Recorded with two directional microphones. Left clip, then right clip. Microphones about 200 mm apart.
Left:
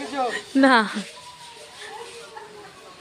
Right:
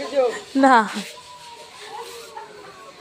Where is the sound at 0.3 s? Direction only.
10° left (ahead or behind).